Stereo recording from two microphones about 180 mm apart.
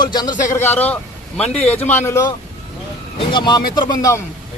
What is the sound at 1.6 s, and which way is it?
Speech, 10° left (ahead or behind).